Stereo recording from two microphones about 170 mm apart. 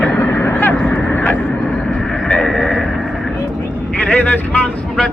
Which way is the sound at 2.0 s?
Centre (ahead or behind).